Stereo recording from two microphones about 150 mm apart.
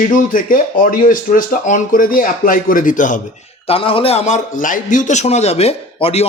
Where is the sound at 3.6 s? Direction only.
40° left (ahead or behind).